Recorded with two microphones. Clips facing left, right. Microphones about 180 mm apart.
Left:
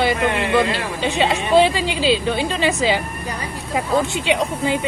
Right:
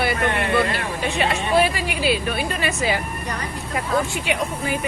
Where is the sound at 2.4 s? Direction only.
90° left.